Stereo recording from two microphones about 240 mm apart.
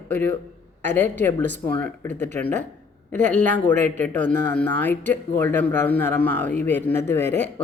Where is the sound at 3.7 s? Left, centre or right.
Right.